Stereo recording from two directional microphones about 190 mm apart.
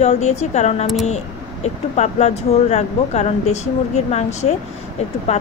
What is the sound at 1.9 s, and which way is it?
Speech, 35° left (ahead or behind).